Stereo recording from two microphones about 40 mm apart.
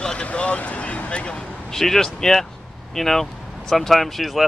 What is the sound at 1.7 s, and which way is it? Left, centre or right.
Speech, centre.